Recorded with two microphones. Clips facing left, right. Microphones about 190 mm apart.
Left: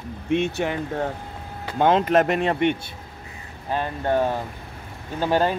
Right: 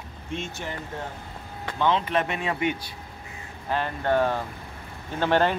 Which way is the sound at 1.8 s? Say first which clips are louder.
Left 6 dB; 45° left (ahead or behind).